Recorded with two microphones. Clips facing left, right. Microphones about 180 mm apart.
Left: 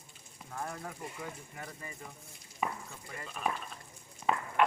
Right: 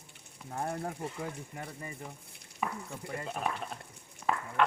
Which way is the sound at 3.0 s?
65° right (ahead or behind).